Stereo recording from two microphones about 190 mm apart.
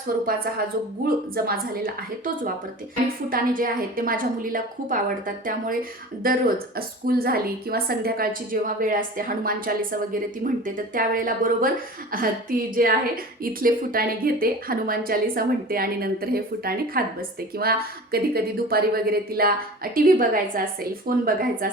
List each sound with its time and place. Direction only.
1.0 s a woman's voice: 50° right (ahead or behind)